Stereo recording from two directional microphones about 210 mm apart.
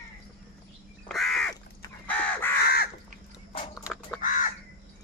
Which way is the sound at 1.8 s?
5° left (ahead or behind).